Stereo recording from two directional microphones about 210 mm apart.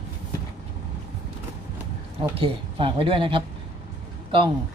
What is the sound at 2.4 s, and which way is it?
Speech, 25° right (ahead or behind).